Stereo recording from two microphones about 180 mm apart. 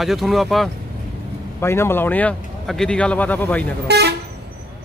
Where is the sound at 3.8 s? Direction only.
65° right (ahead or behind).